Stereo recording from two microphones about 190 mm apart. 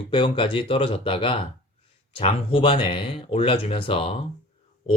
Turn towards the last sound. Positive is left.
turn(degrees=30)  # may be behind; listen again after turning